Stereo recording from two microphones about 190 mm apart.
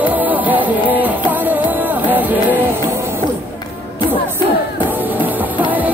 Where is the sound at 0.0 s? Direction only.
10° right (ahead or behind).